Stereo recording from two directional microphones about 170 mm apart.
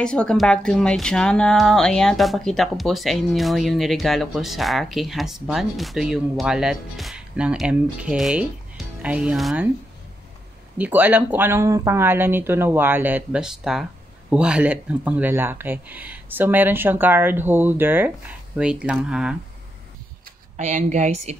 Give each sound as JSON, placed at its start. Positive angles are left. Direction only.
{"t": 0.0, "sound": "speech", "side_deg": 5}
{"t": 10.8, "sound": "speech", "side_deg": -10}
{"t": 20.5, "sound": "speech", "side_deg": -45}